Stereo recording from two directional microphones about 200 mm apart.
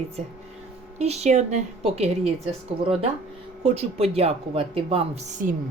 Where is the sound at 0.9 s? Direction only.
35° right (ahead or behind).